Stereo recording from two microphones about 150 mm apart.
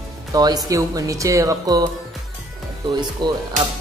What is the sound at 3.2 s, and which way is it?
Speech, 30° right (ahead or behind).